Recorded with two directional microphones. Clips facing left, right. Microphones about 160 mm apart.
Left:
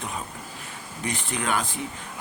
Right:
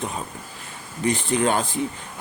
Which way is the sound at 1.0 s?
30° right (ahead or behind).